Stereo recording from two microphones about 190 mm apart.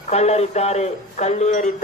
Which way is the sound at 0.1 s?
35° left (ahead or behind).